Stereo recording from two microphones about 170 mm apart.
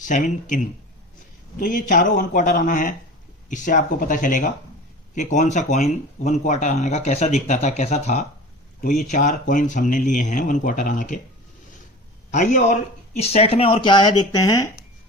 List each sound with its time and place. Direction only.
0.0 s speech: 50° left (ahead or behind)
12.3 s speech: 45° left (ahead or behind); by 14.7 s 20° left (ahead or behind)